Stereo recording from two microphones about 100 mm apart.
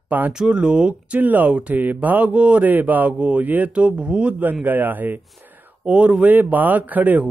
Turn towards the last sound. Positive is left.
turn(degrees=-15)  # may be behind; listen again after turning